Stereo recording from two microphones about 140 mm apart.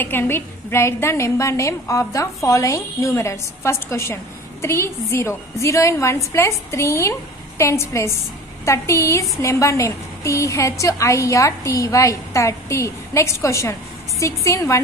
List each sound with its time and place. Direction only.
0.0 s a woman's voice: 15° left (ahead or behind)